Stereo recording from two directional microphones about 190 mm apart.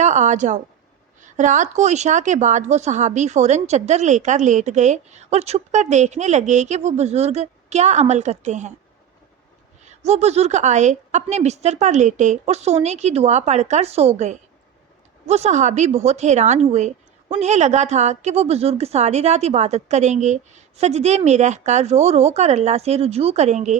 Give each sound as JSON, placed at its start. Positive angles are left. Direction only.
{"t": 0.0, "sound": "a sound", "side_deg": -40}
{"t": 1.2, "sound": "a woman's voice", "side_deg": -40}
{"t": 9.8, "sound": "a woman's voice", "side_deg": -35}